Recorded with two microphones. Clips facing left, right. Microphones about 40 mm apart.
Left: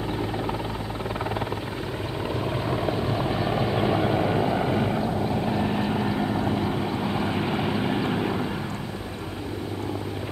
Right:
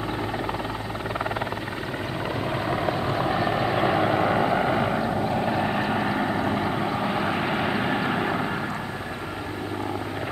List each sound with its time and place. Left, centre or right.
2.7 s vehicle: centre